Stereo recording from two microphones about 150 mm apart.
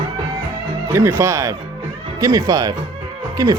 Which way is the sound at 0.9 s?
15° right (ahead or behind).